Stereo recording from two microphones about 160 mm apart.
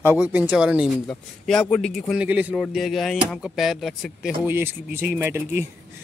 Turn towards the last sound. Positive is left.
turn(degrees=-15)  # may be behind; listen again after turning